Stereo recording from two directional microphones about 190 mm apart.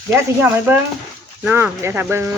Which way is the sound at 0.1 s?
10° right (ahead or behind).